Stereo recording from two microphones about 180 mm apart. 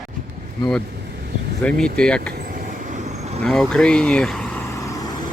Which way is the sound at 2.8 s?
40° right (ahead or behind).